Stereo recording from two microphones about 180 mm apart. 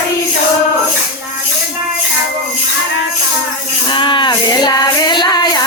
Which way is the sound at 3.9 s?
25° left (ahead or behind).